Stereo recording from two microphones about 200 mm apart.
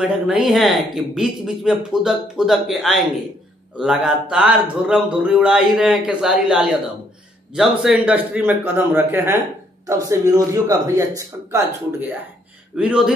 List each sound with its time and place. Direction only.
0.0 s a man's voice: 5° right (ahead or behind)
12.7 s speech: 5° right (ahead or behind)